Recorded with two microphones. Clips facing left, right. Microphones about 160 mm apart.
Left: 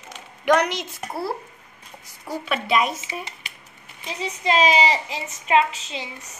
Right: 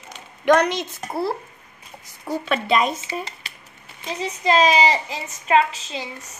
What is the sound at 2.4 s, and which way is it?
Speech, 5° left (ahead or behind).